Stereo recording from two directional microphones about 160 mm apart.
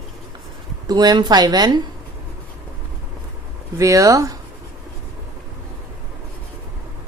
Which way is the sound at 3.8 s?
20° right (ahead or behind).